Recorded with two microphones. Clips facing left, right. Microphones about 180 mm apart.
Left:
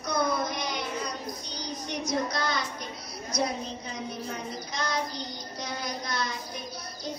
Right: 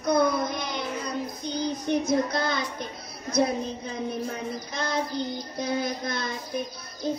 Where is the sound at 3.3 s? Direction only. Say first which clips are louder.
Right 6 dB; 55° right (ahead or behind).